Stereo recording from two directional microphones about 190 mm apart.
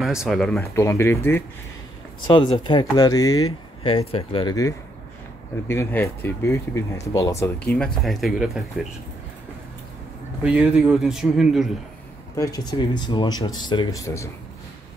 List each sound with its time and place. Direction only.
0.0 s a man's voice: centre (ahead or behind)
0.6 s speech: 15° left (ahead or behind)
2.2 s speech: 25° left (ahead or behind)
3.8 s a man's voice: 30° left (ahead or behind); by 8.8 s centre (ahead or behind)
10.4 s a man's voice: 5° right (ahead or behind)
12.4 s speech: 20° left (ahead or behind)